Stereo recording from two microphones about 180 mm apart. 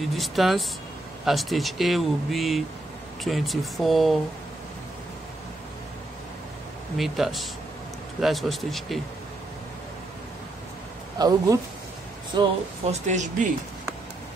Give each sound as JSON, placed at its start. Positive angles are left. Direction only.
{"t": 0.1, "sound": "speech", "side_deg": 0}
{"t": 7.0, "sound": "speech", "side_deg": 0}
{"t": 11.1, "sound": "speech", "side_deg": -20}
{"t": 12.8, "sound": "speech", "side_deg": -40}